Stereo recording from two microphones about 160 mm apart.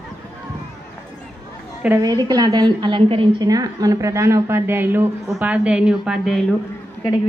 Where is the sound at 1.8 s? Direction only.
20° right (ahead or behind); by 6.5 s centre (ahead or behind).